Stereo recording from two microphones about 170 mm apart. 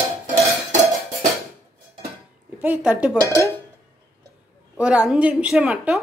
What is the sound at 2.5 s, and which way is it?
Speech, 10° right (ahead or behind).